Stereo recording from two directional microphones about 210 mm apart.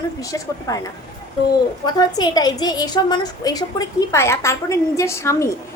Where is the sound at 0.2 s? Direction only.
15° left (ahead or behind).